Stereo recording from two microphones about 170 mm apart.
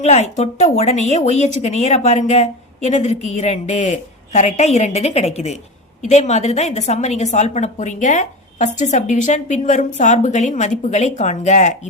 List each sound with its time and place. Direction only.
0.0 s a woman's voice: 40° left (ahead or behind)